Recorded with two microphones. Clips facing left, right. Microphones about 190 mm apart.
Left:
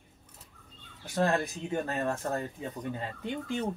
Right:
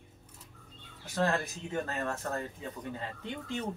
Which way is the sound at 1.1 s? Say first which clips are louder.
Left 3 dB; 15° left (ahead or behind).